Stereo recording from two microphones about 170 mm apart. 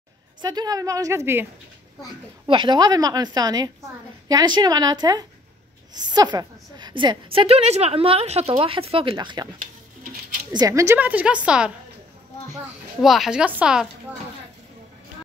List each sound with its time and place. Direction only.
0.4 s a woman's voice: 25° right (ahead or behind)
2.4 s a woman's voice: 30° right (ahead or behind)
10.5 s a woman's voice: 20° right (ahead or behind); by 11.7 s 5° right (ahead or behind)
13.0 s speech: centre (ahead or behind)